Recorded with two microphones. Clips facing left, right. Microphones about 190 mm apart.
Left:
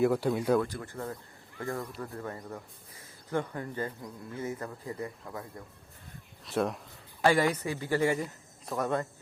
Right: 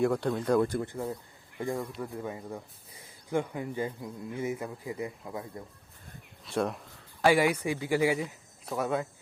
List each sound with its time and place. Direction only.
0.0 s speech: 5° left (ahead or behind)
0.9 s speech: 15° right (ahead or behind)
6.4 s speech: centre (ahead or behind)
7.3 s speech: 10° right (ahead or behind)